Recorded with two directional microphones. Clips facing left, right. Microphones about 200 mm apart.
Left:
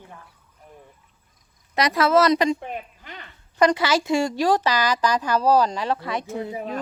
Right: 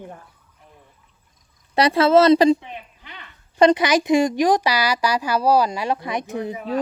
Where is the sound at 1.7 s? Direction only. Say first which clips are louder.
Right 4 dB; 30° right (ahead or behind).